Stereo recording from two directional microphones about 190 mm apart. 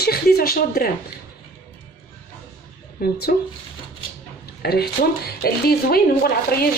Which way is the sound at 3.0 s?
50° left (ahead or behind).